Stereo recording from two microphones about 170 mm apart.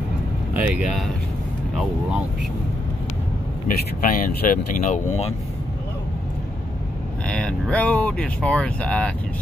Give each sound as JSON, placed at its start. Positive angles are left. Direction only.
{"t": 0.6, "sound": "speech", "side_deg": -5}
{"t": 3.6, "sound": "speech", "side_deg": 55}
{"t": 7.2, "sound": "speech", "side_deg": 5}